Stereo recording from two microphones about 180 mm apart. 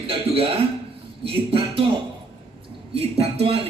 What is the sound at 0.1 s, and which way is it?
A man's voice, 30° right (ahead or behind).